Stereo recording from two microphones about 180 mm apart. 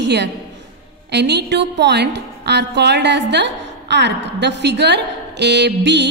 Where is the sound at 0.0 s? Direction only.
70° right (ahead or behind).